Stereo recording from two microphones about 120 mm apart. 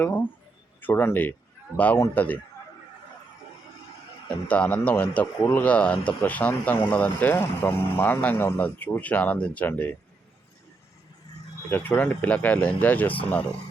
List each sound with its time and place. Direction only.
0.0 s a man's voice: 15° left (ahead or behind)
4.4 s speech: 10° left (ahead or behind)
11.7 s speech: 15° left (ahead or behind)